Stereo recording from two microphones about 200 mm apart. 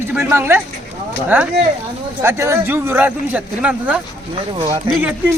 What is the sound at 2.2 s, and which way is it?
Speech, 15° right (ahead or behind).